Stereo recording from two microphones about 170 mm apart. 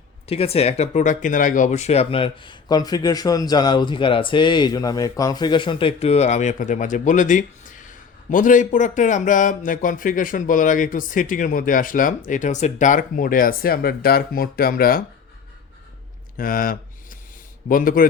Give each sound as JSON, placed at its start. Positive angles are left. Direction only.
{"t": 0.3, "sound": "speech", "side_deg": 35}
{"t": 16.4, "sound": "a sound", "side_deg": 55}
{"t": 17.7, "sound": "a man's voice", "side_deg": 55}